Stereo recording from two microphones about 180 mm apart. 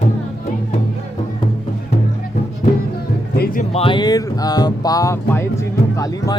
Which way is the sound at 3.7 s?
30° left (ahead or behind).